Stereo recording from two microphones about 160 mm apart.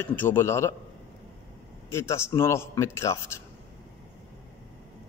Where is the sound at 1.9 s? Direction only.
15° left (ahead or behind).